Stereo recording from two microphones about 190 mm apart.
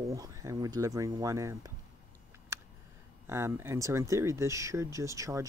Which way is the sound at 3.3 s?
15° right (ahead or behind).